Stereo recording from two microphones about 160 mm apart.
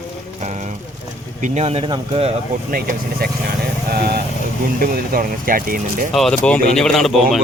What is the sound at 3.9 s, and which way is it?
Speech, 75° right (ahead or behind).